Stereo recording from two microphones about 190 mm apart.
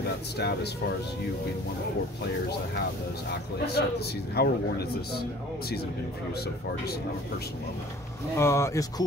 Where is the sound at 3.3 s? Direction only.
60° left (ahead or behind).